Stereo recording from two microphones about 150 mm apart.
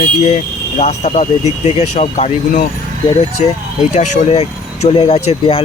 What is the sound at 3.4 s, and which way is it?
Speech, 45° left (ahead or behind).